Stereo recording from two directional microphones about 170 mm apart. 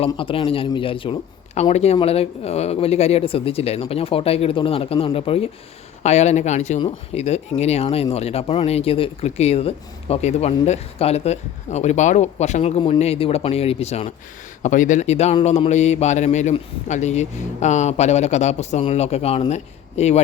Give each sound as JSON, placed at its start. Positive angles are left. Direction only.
{"t": 0.0, "sound": "a man's voice", "side_deg": 30}
{"t": 14.6, "sound": "a man's voice", "side_deg": 50}